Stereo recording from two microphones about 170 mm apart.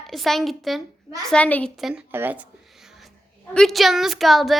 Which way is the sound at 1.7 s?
Centre (ahead or behind).